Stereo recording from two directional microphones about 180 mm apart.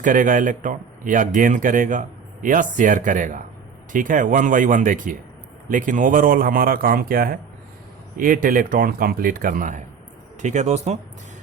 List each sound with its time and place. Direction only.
0.0 s speech: 50° right (ahead or behind)